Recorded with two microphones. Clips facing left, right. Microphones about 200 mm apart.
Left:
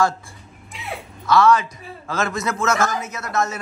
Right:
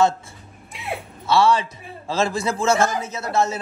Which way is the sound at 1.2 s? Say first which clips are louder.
Left 2 dB; 30° right (ahead or behind).